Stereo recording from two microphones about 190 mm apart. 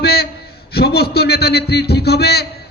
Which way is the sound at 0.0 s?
55° left (ahead or behind).